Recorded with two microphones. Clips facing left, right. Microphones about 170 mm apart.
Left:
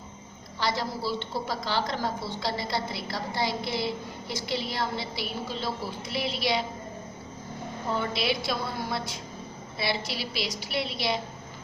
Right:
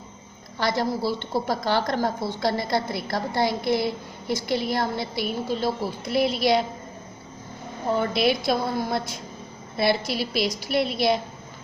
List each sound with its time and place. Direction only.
0.6 s a woman's voice: 50° right (ahead or behind)
7.9 s a woman's voice: 50° right (ahead or behind)